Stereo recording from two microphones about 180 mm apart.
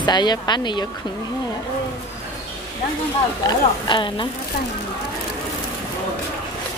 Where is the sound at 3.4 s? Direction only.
25° left (ahead or behind).